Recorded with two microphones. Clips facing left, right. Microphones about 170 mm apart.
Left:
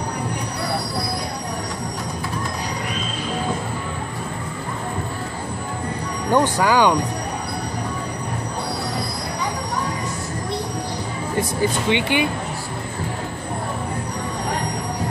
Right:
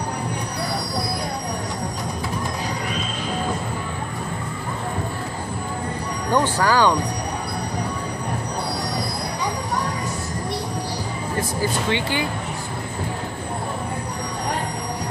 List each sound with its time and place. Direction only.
6.3 s speech: 15° left (ahead or behind)
11.9 s speech: 20° left (ahead or behind)